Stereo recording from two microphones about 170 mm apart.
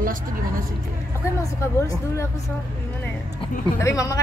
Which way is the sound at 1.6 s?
15° left (ahead or behind).